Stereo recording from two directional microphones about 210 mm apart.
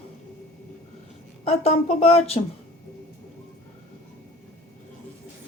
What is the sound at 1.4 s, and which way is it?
Speech, 30° left (ahead or behind).